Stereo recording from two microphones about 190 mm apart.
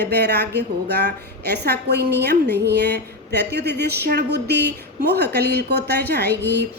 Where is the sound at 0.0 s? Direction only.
60° right (ahead or behind).